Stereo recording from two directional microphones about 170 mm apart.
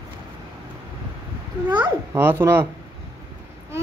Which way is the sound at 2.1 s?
15° right (ahead or behind).